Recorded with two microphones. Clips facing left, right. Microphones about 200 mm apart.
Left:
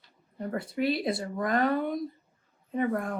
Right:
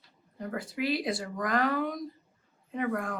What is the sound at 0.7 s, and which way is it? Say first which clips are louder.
Speech: left 2 dB; 25° left (ahead or behind).